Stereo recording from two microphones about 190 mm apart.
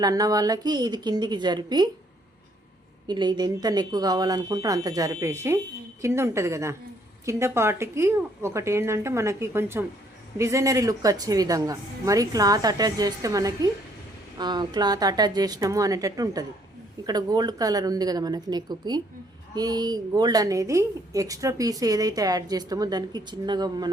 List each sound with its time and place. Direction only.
0.0 s a woman's voice: 20° right (ahead or behind)
3.1 s a woman's voice: 20° right (ahead or behind)